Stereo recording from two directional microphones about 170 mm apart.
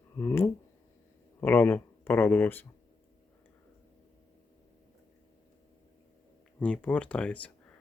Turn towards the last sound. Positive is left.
turn(degrees=5)  # may be behind; listen again after turning